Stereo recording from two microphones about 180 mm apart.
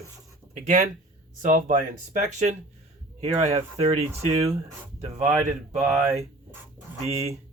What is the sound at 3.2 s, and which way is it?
Speech, 35° right (ahead or behind).